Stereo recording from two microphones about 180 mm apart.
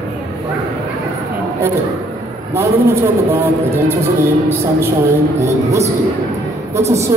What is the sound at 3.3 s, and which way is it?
Speech, 10° right (ahead or behind).